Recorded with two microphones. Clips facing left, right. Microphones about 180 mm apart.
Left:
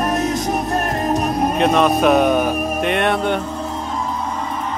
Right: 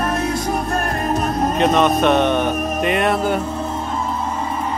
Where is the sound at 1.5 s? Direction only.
Centre (ahead or behind).